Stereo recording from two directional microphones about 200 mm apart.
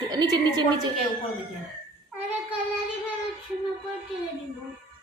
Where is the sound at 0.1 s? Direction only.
20° right (ahead or behind).